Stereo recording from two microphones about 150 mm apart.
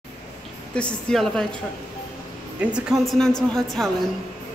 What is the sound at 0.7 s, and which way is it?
Speech, 5° left (ahead or behind).